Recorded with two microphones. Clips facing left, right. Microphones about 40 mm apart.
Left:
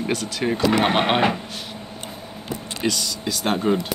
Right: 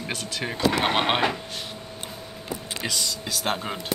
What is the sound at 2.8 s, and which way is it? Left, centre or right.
Speech, centre.